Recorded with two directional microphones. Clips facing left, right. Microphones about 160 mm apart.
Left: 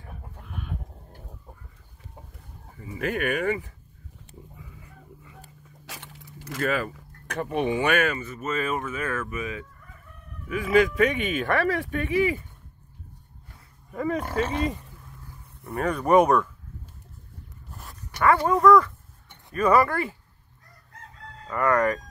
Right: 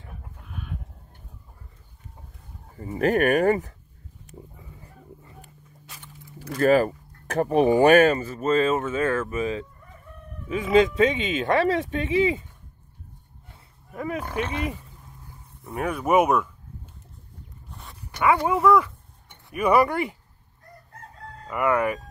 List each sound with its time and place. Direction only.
2.8 s speech: 45° right (ahead or behind)
4.6 s a sound: 35° right (ahead or behind)
5.9 s a sound: 90° left
6.5 s speech: 40° right (ahead or behind); by 12.4 s 20° right (ahead or behind)
13.9 s speech: 5° right (ahead or behind)
15.8 s speech: 10° right (ahead or behind)
17.6 s a sound: centre (ahead or behind)
18.2 s speech: 15° right (ahead or behind)
21.5 s speech: 10° right (ahead or behind)